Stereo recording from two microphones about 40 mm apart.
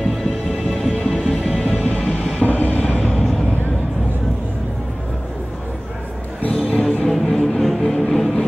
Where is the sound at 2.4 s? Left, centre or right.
Left.